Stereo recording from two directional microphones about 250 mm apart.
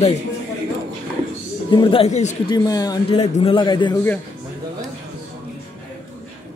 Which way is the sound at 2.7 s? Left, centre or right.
Centre.